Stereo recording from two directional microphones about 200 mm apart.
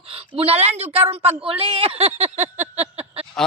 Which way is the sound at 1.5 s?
25° right (ahead or behind).